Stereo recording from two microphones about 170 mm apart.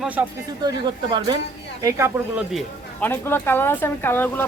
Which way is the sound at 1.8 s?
15° right (ahead or behind).